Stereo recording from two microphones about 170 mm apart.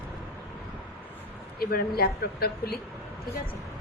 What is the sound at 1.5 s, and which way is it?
Speech, 65° left (ahead or behind).